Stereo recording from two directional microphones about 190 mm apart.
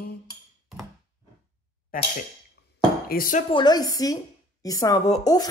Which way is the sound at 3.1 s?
45° left (ahead or behind).